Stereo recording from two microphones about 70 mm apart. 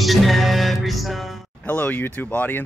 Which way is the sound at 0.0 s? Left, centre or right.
Centre.